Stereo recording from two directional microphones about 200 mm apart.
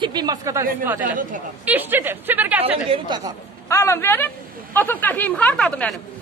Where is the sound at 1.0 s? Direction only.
40° right (ahead or behind).